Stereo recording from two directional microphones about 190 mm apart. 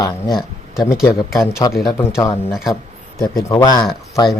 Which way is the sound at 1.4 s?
20° left (ahead or behind).